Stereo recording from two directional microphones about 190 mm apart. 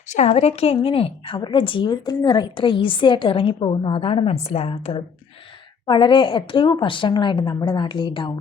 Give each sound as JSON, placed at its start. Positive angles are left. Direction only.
{"t": 0.1, "sound": "a woman's voice", "side_deg": 35}